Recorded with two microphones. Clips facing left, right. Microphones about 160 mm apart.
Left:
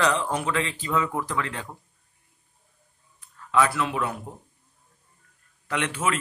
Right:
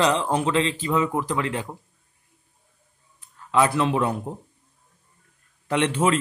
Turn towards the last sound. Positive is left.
turn(degrees=-25)  # may be behind; listen again after turning